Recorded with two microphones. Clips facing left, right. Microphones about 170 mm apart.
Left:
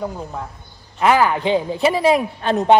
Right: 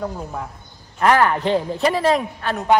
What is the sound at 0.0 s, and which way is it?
Speech, centre (ahead or behind).